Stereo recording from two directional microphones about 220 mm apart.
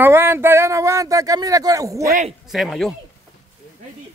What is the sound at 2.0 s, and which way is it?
Speech, 35° right (ahead or behind).